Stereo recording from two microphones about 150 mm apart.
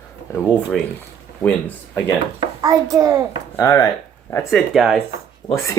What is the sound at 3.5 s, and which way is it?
Speech, 20° left (ahead or behind).